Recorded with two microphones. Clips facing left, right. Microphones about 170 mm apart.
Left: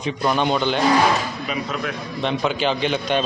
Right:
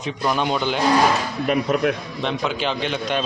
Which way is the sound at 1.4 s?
55° right (ahead or behind).